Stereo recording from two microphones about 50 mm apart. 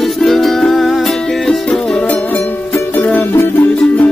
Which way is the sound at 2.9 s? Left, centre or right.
Left.